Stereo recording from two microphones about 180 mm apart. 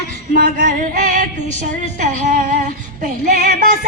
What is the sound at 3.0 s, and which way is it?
Speech, 50° right (ahead or behind).